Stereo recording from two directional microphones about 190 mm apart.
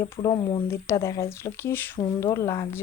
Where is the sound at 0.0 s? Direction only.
20° left (ahead or behind).